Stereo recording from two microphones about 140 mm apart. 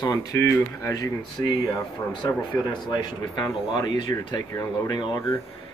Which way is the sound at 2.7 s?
30° left (ahead or behind).